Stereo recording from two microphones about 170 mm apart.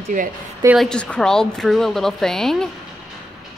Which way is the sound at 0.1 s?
50° right (ahead or behind).